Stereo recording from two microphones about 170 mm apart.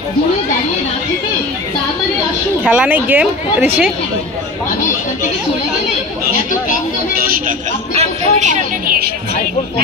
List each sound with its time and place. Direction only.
2.6 s speech: 5° right (ahead or behind)
7.2 s speech: 60° right (ahead or behind)
7.9 s speech: 40° right (ahead or behind)